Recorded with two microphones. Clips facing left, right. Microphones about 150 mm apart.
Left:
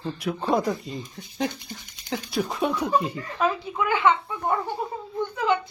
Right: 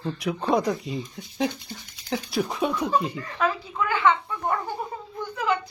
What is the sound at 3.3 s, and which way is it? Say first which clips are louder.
Speech: left 1 dB; 20° left (ahead or behind).